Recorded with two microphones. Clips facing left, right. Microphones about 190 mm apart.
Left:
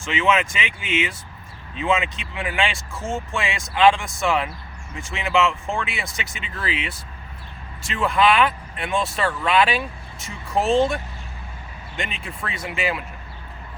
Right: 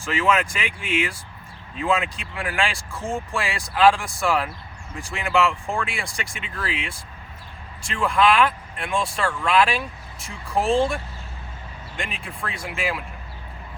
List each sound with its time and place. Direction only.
0.0 s speech: centre (ahead or behind)